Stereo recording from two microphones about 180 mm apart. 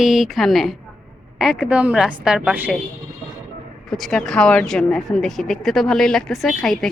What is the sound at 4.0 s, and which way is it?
Speech, 5° left (ahead or behind).